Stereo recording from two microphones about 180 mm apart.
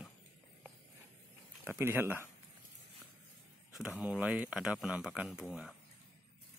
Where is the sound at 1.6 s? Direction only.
10° right (ahead or behind).